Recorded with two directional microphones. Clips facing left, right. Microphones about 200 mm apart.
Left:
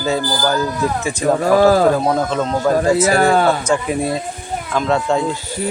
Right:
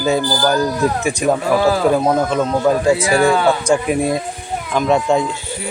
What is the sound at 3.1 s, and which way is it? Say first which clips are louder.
Speech: even; 45° left (ahead or behind).